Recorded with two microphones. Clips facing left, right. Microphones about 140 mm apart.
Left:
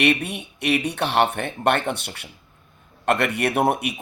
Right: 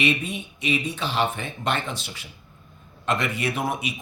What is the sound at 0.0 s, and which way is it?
Speech, 65° left (ahead or behind).